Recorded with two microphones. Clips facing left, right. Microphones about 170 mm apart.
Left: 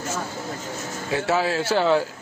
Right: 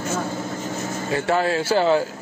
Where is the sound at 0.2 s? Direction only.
25° right (ahead or behind).